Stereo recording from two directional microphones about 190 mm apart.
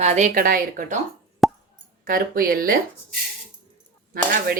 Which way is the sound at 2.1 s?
50° right (ahead or behind).